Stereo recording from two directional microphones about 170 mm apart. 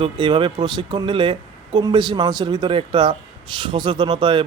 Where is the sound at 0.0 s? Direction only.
30° right (ahead or behind).